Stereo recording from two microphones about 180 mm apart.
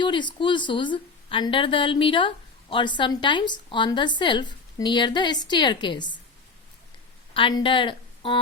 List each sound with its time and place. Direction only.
0.0 s a woman's voice: 25° left (ahead or behind)
7.3 s a woman's voice: 30° left (ahead or behind)